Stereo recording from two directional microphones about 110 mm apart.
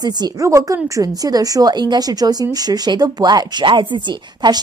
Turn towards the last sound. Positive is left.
turn(degrees=-40)  # may be behind; listen again after turning